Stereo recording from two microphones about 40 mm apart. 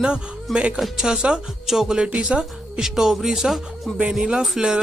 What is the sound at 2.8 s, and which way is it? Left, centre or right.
Speech, centre.